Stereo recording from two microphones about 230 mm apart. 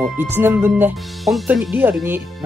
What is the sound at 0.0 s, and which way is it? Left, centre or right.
Speech, centre.